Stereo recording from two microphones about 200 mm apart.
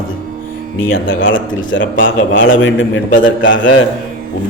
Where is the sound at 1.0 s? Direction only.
70° left (ahead or behind).